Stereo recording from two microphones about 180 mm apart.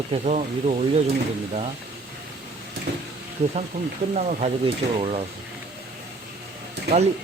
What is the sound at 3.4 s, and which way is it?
Speech, 35° right (ahead or behind).